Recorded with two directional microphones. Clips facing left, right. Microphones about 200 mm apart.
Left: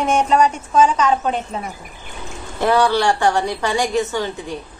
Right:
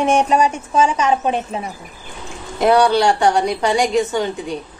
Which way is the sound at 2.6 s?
15° right (ahead or behind).